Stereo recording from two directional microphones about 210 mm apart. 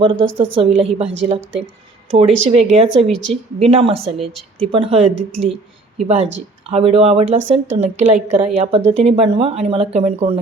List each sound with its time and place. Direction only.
0.0 s a woman's voice: 25° right (ahead or behind)
2.1 s a woman's voice: 30° right (ahead or behind)